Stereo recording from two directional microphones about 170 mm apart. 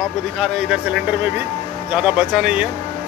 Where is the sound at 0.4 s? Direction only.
5° right (ahead or behind).